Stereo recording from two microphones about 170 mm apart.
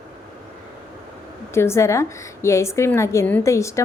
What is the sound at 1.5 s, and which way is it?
A woman's voice, 15° left (ahead or behind).